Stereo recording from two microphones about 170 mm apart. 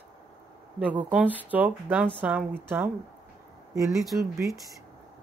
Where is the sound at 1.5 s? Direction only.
10° right (ahead or behind).